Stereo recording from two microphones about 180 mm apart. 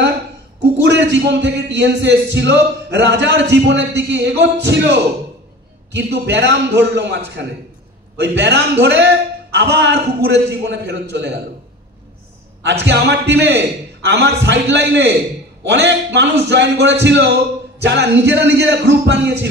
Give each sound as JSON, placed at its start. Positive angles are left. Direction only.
{"t": 0.8, "sound": "a man's voice", "side_deg": -80}
{"t": 12.6, "sound": "a man's voice", "side_deg": -80}